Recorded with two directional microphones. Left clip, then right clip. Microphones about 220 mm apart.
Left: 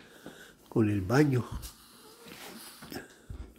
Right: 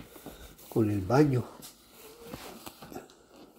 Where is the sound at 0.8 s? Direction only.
15° left (ahead or behind).